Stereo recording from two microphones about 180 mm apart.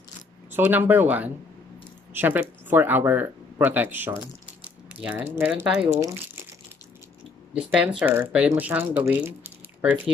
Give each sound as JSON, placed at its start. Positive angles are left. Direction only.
{"t": 0.5, "sound": "speech", "side_deg": -10}
{"t": 5.9, "sound": "speech", "side_deg": -20}
{"t": 8.0, "sound": "speech", "side_deg": -10}